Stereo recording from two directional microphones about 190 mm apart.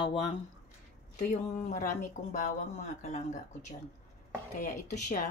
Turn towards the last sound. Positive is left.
turn(degrees=40)  # may be behind; listen again after turning